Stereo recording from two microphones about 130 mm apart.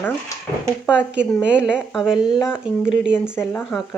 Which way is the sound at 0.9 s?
10° right (ahead or behind).